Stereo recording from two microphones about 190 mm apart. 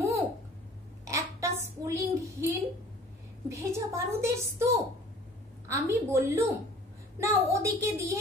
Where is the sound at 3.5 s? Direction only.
15° right (ahead or behind).